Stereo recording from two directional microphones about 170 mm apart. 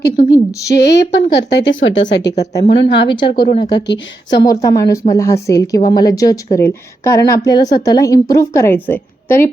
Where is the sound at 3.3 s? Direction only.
65° left (ahead or behind).